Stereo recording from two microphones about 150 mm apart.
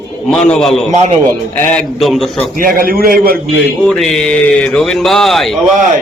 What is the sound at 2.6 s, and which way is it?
Speech, 70° right (ahead or behind).